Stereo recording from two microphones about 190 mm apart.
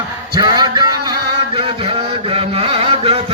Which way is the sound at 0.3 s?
20° right (ahead or behind).